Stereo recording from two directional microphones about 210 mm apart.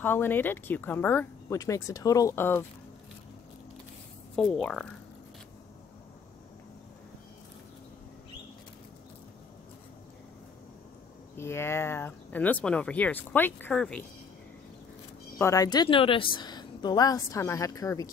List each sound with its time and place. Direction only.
0.0 s speech: 10° left (ahead or behind)
4.4 s speech: 5° left (ahead or behind)
11.3 s speech: 10° left (ahead or behind)
15.3 s speech: 15° left (ahead or behind)